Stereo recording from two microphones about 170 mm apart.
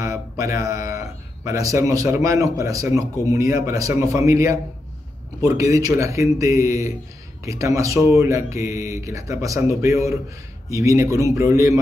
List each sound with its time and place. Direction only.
0.0 s speech: 20° right (ahead or behind)